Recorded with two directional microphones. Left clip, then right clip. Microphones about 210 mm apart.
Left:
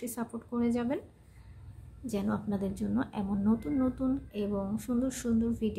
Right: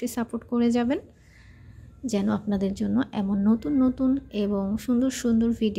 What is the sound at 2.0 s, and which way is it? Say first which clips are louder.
A woman's voice: right 7 dB; 30° right (ahead or behind).